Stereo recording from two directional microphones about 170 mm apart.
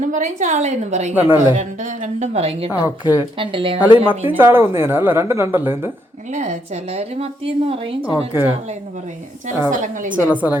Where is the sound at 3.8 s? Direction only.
10° right (ahead or behind).